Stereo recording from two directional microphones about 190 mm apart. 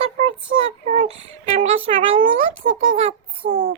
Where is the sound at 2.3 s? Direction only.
90° right.